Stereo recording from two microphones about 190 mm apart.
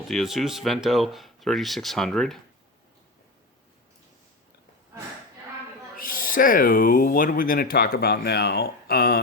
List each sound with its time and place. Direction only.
0.1 s speech: centre (ahead or behind)
6.0 s speech: 45° left (ahead or behind)